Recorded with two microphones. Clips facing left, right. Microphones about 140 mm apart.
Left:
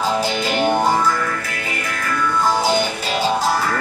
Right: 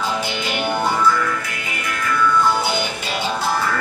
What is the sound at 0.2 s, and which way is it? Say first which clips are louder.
Music: left 5 dB; 40° left (ahead or behind).